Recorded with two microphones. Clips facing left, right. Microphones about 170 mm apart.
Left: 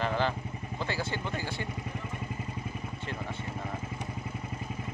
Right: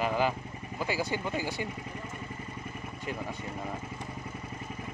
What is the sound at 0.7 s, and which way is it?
Speech, 10° right (ahead or behind).